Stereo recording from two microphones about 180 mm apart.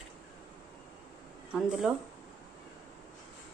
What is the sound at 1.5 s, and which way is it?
Speech, 5° right (ahead or behind).